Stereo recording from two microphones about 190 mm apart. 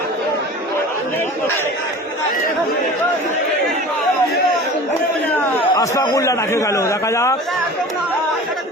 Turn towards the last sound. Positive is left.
turn(degrees=15)  # may be behind; listen again after turning